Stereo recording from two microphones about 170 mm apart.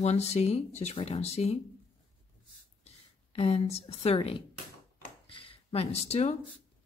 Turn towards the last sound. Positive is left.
turn(degrees=40)  # may be behind; listen again after turning